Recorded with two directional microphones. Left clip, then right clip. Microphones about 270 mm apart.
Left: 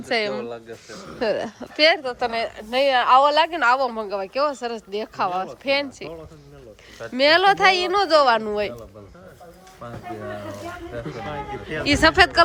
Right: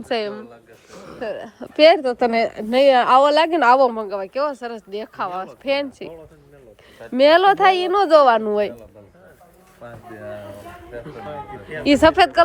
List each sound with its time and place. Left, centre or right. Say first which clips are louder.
0.1 s speech: left 1 dB; centre
1.6 s a woman's voice: right 5 dB; centre
2.7 s a woman's voice: right 3 dB; right
10.9 s speech: even; centre
11.9 s a woman's voice: right 3 dB; centre